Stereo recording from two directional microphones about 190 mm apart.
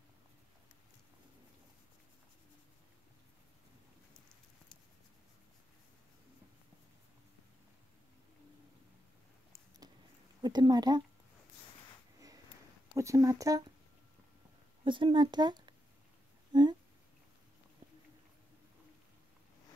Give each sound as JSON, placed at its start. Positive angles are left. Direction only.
{"t": 10.4, "sound": "speech", "side_deg": -20}
{"t": 12.9, "sound": "speech", "side_deg": -15}
{"t": 14.9, "sound": "speech", "side_deg": -25}